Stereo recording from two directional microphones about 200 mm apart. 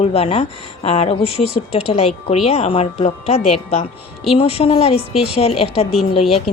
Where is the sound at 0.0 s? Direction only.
30° left (ahead or behind).